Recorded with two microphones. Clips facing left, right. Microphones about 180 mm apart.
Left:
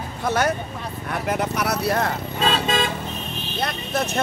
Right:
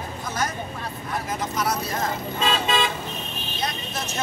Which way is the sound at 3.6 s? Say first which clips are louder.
Left 6 dB; 60° left (ahead or behind).